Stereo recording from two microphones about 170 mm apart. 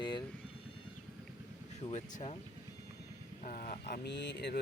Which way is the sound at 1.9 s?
40° left (ahead or behind).